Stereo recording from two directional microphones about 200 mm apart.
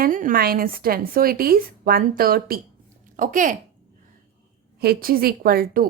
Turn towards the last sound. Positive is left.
turn(degrees=-45)  # may be behind; listen again after turning